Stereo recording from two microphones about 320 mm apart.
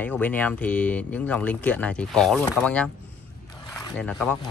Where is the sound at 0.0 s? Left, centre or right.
Centre.